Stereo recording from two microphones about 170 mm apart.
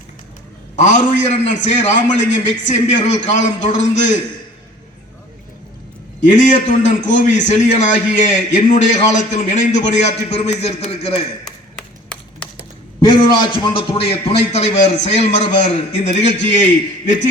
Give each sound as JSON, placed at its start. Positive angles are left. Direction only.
{"t": 0.8, "sound": "a man's voice", "side_deg": 45}
{"t": 6.2, "sound": "a man's voice", "side_deg": 45}
{"t": 11.4, "sound": "tap", "side_deg": 5}
{"t": 13.0, "sound": "a man's voice", "side_deg": 25}